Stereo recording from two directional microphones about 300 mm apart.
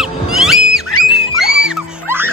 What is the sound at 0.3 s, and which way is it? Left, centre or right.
Music, centre.